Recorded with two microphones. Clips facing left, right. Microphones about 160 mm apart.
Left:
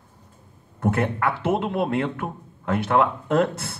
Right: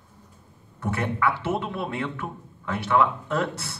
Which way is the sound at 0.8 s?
50° left (ahead or behind).